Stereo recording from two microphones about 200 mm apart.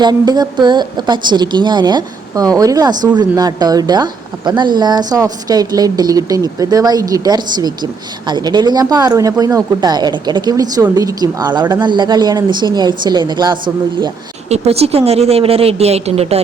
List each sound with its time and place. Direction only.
0.0 s a woman's voice: 20° right (ahead or behind)